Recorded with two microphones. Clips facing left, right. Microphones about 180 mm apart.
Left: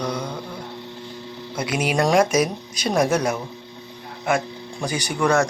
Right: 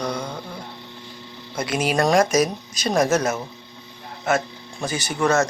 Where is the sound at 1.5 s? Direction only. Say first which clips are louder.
Even; 10° left (ahead or behind).